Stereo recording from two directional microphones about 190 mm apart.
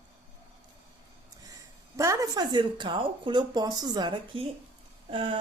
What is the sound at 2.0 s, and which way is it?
A woman's voice, 20° right (ahead or behind).